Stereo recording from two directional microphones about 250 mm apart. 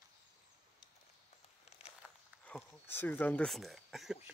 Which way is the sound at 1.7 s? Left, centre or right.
Left.